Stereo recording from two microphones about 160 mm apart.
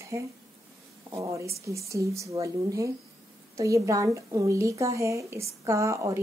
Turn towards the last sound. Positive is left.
turn(degrees=-20)  # may be behind; listen again after turning